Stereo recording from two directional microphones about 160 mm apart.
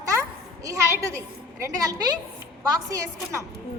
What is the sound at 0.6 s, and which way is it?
A woman's voice, 20° right (ahead or behind).